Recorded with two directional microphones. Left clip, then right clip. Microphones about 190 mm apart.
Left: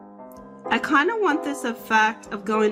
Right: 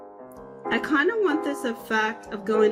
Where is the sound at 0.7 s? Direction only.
20° left (ahead or behind).